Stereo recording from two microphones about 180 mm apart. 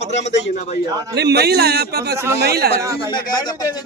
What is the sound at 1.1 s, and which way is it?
A man's voice, 65° right (ahead or behind).